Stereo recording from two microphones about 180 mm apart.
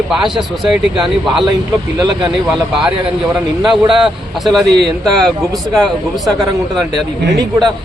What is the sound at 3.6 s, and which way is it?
A man's voice, centre (ahead or behind).